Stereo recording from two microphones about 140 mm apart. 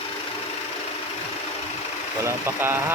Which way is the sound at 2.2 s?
15° right (ahead or behind).